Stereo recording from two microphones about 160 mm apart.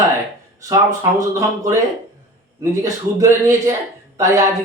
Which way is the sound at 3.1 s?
20° right (ahead or behind).